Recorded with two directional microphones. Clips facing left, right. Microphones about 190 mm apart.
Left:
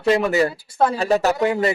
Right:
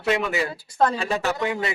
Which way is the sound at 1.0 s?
40° left (ahead or behind).